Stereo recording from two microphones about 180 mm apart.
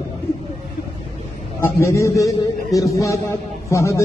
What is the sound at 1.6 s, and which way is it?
A man's voice, 15° left (ahead or behind).